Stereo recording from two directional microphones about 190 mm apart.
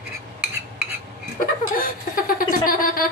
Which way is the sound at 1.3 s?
50° left (ahead or behind).